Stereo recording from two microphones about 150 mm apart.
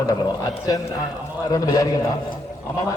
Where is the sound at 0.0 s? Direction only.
25° left (ahead or behind).